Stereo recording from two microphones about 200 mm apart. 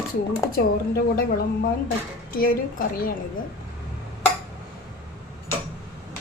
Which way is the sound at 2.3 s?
45° left (ahead or behind).